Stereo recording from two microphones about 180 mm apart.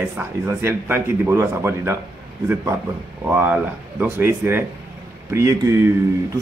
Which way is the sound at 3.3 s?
10° right (ahead or behind).